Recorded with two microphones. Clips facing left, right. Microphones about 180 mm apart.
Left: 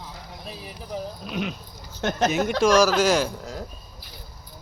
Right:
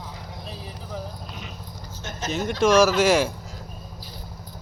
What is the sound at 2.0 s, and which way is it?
Speech, 65° left (ahead or behind).